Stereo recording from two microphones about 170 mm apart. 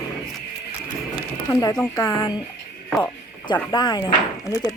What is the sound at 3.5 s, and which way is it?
Speech, 25° left (ahead or behind).